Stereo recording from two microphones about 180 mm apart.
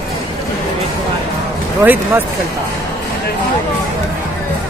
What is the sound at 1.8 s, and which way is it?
Speech, 10° right (ahead or behind).